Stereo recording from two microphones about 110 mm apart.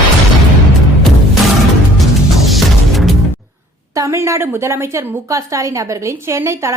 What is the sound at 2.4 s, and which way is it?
Music, centre (ahead or behind).